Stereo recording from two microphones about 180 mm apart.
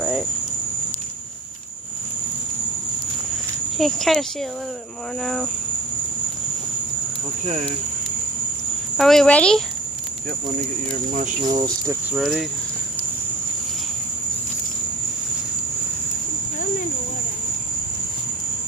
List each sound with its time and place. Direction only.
0.0 s cricket: centre (ahead or behind)
3.8 s speech: centre (ahead or behind)
9.0 s speech: centre (ahead or behind)
11.5 s speech: 20° right (ahead or behind)
12.1 s speech: centre (ahead or behind)